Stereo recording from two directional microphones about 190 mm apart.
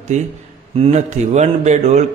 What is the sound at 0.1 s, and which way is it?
A man's voice, 40° right (ahead or behind).